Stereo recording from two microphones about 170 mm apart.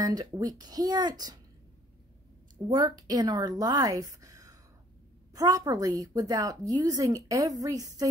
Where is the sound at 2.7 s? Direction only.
25° right (ahead or behind).